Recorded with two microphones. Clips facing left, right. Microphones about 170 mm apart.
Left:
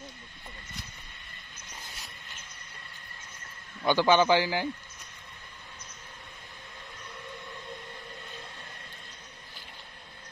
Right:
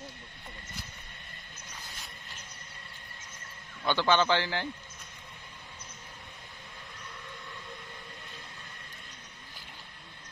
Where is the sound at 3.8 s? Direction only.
15° left (ahead or behind).